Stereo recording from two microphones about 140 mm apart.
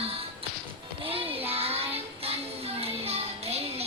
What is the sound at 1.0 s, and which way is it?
Child singing, 40° right (ahead or behind).